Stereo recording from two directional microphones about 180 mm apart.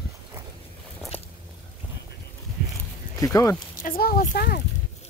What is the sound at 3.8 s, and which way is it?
Speech, 50° left (ahead or behind).